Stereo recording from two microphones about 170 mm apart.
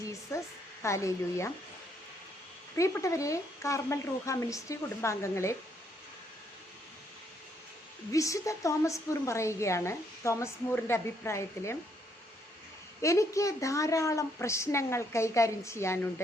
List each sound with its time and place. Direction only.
0.1 s a woman's voice: 15° left (ahead or behind)
2.7 s a woman's voice: 20° left (ahead or behind)
8.1 s a woman's voice: 20° left (ahead or behind)
13.0 s a woman's voice: 15° left (ahead or behind)